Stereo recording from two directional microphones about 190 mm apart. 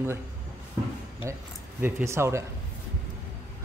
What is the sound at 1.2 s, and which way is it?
A man's voice, 15° right (ahead or behind).